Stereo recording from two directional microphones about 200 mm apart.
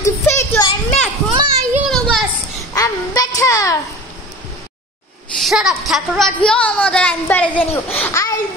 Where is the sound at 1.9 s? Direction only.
5° left (ahead or behind).